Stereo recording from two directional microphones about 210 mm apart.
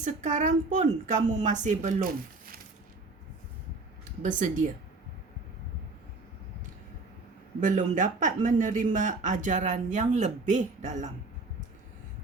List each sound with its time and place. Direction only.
0.0 s speech: 35° right (ahead or behind)
4.2 s speech: 40° right (ahead or behind)
7.6 s speech: 40° right (ahead or behind)